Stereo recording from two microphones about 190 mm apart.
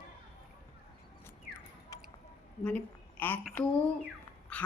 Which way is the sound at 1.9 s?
20° left (ahead or behind).